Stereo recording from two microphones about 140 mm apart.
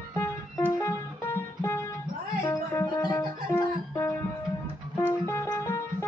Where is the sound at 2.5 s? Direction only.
20° left (ahead or behind).